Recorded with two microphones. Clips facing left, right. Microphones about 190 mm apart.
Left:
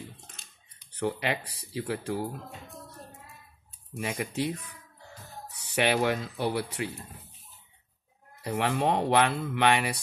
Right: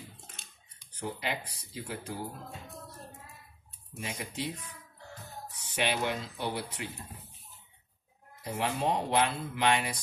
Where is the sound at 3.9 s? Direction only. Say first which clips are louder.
Left 7 dB; 60° left (ahead or behind).